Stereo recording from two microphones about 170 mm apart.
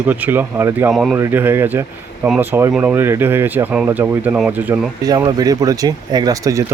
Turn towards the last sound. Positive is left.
turn(degrees=-20)  # may be behind; listen again after turning